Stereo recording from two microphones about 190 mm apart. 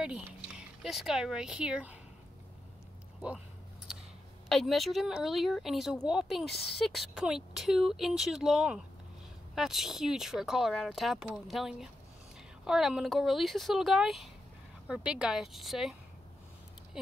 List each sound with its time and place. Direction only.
0.0 s speech: 5° right (ahead or behind)
4.5 s speech: centre (ahead or behind)